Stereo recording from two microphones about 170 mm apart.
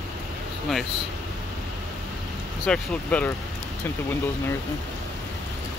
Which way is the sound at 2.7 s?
5° left (ahead or behind).